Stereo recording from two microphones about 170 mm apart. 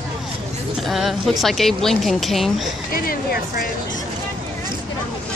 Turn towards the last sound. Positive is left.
turn(degrees=60)  # may be behind; listen again after turning